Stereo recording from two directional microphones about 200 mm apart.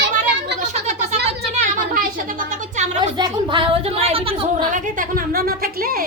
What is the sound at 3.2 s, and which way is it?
A woman's voice, 25° right (ahead or behind).